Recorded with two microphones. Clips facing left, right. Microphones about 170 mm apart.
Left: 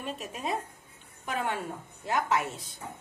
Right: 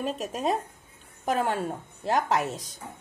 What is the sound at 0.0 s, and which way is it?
A woman's voice, 40° right (ahead or behind).